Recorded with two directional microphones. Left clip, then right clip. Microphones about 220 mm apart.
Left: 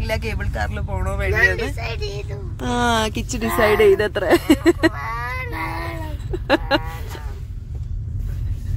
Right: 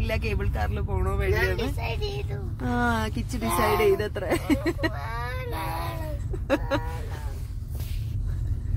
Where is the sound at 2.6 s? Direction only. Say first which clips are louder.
Left 7 dB; 20° left (ahead or behind).